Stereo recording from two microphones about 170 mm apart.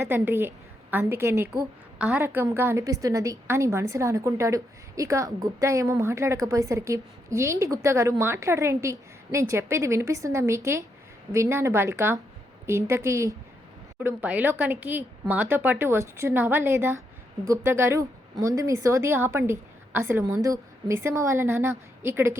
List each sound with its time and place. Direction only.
0.0 s a woman's voice: 15° right (ahead or behind)